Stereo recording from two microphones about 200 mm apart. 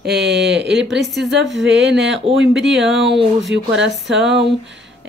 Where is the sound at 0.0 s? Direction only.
55° right (ahead or behind).